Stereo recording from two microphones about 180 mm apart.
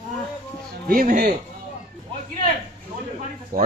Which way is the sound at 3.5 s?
55° right (ahead or behind).